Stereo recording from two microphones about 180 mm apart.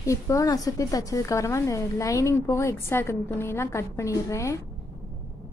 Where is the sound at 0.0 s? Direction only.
15° left (ahead or behind).